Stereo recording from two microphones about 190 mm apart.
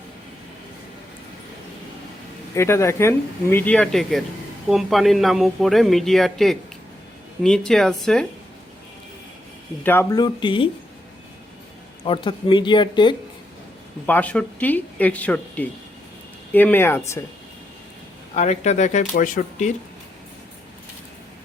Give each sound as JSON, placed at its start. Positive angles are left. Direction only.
{"t": 2.6, "sound": "speech", "side_deg": 15}
{"t": 9.8, "sound": "speech", "side_deg": 10}
{"t": 12.0, "sound": "speech", "side_deg": 25}
{"t": 14.1, "sound": "speech", "side_deg": 5}
{"t": 18.3, "sound": "speech", "side_deg": 35}